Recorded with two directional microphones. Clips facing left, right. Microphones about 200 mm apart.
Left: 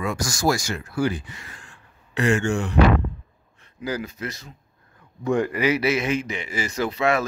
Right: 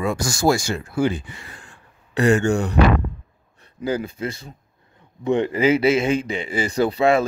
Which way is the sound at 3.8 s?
25° right (ahead or behind).